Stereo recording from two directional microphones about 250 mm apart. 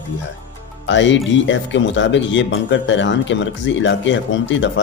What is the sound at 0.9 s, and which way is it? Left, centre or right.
Speech, left.